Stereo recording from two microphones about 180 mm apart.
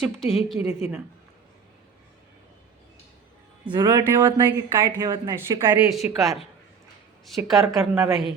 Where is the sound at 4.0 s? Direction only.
10° right (ahead or behind).